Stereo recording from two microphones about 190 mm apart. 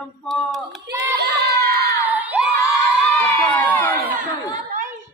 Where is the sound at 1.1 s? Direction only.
60° right (ahead or behind).